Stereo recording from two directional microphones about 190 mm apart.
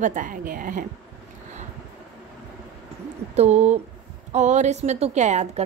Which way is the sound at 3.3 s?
35° right (ahead or behind).